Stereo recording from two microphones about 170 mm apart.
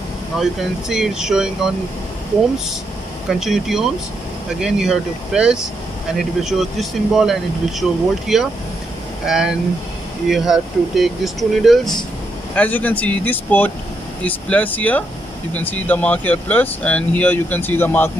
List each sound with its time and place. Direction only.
0.4 s speech: centre (ahead or behind)
3.3 s speech: centre (ahead or behind)